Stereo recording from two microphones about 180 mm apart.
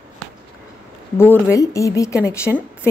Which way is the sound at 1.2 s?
15° left (ahead or behind).